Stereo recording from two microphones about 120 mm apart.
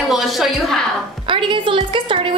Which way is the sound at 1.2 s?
45° right (ahead or behind).